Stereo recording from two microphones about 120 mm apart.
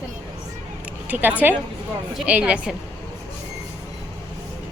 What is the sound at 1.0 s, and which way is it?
A woman's voice, 15° right (ahead or behind).